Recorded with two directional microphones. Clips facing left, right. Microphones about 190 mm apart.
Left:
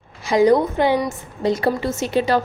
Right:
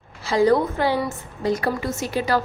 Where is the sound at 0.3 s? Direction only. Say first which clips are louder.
Left 3 dB; 15° left (ahead or behind).